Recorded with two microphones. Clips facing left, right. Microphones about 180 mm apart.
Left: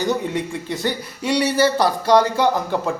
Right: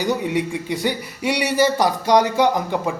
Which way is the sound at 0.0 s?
10° right (ahead or behind).